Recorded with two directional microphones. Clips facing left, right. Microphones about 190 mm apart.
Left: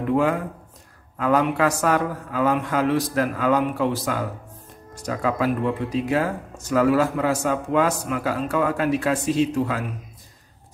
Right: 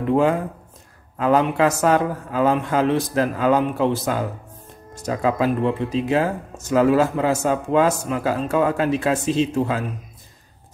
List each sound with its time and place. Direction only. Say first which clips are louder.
0.1 s speech: right 3 dB; 25° right (ahead or behind)